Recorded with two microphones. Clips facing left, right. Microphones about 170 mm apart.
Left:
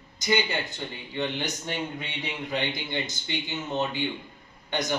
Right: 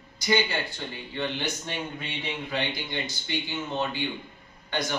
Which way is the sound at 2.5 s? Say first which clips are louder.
Left 2 dB; 20° left (ahead or behind).